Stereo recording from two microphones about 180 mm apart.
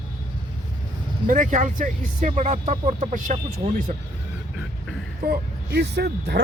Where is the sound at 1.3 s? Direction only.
45° right (ahead or behind).